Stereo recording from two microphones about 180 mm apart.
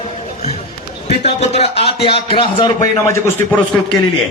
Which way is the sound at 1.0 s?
40° left (ahead or behind).